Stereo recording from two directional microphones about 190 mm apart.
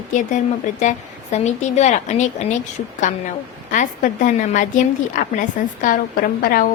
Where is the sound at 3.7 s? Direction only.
45° left (ahead or behind).